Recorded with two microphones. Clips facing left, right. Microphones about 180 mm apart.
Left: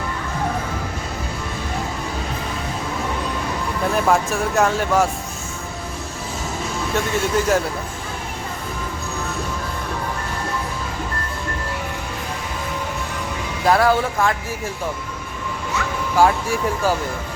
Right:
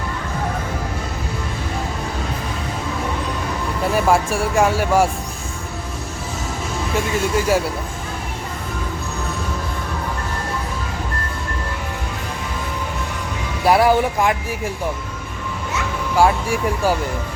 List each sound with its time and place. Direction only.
3.9 s speech: 10° right (ahead or behind)
6.9 s speech: 10° right (ahead or behind)
13.7 s speech: 10° right (ahead or behind)
16.1 s speech: 15° right (ahead or behind)